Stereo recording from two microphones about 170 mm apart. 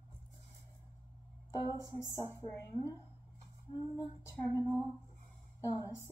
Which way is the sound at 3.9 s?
20° left (ahead or behind).